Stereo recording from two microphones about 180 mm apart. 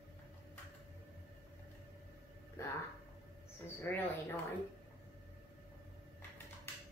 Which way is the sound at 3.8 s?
10° left (ahead or behind).